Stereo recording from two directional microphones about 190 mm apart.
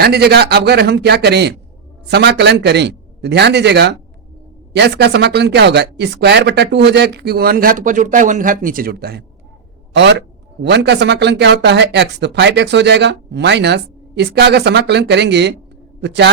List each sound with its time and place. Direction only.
0.0 s a man's voice: 60° right (ahead or behind)
9.9 s a man's voice: 65° right (ahead or behind)